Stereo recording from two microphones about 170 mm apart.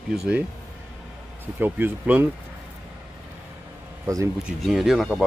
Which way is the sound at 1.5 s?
10° right (ahead or behind).